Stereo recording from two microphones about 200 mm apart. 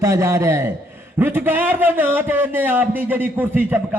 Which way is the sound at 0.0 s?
15° right (ahead or behind).